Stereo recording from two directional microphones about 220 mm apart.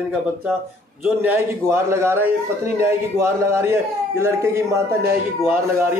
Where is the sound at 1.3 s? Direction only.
10° right (ahead or behind).